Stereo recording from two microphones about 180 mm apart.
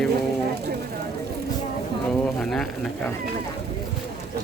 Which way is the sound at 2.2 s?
5° left (ahead or behind).